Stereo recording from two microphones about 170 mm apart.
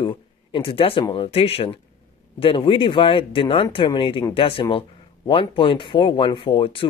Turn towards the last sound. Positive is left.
turn(degrees=30)  # may be behind; listen again after turning